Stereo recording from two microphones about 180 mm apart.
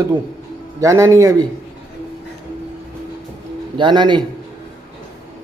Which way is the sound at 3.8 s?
25° right (ahead or behind).